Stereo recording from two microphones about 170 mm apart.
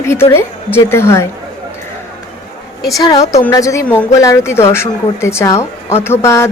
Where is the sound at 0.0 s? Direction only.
15° left (ahead or behind).